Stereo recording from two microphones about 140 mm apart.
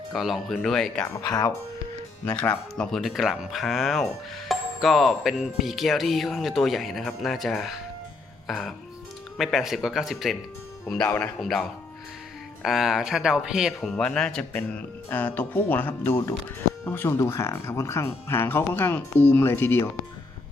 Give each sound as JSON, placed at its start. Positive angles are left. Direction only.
{"t": 0.1, "sound": "a man's voice", "side_deg": -5}
{"t": 1.1, "sound": "speech", "side_deg": 25}
{"t": 2.3, "sound": "a man's voice", "side_deg": 10}
{"t": 12.6, "sound": "a man's voice", "side_deg": 0}